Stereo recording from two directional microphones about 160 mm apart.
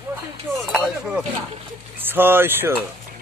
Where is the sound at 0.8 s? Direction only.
10° right (ahead or behind).